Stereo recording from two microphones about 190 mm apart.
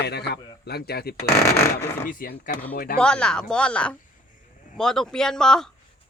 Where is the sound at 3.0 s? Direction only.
5° left (ahead or behind).